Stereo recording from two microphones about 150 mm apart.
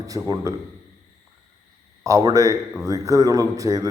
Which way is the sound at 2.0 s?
20° right (ahead or behind).